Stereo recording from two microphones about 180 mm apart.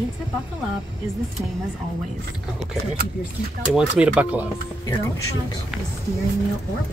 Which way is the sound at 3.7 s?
5° right (ahead or behind).